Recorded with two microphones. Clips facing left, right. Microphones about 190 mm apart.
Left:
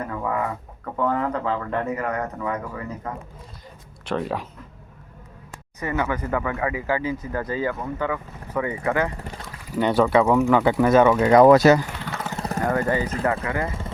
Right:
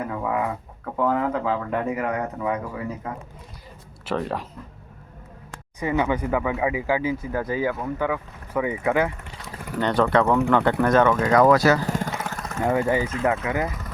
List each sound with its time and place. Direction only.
0.0 s chicken: 10° right (ahead or behind)
0.9 s speech: 5° right (ahead or behind)
4.0 s speech: centre (ahead or behind)
5.8 s speech: 15° right (ahead or behind)
9.1 s speech: 40° left (ahead or behind)
9.7 s speech: 10° left (ahead or behind)
11.3 s speech: 20° left (ahead or behind)
11.8 s a sound: 40° right (ahead or behind)
12.4 s vehicle: 35° left (ahead or behind)
12.6 s speech: 10° right (ahead or behind)
13.7 s speech: 25° left (ahead or behind)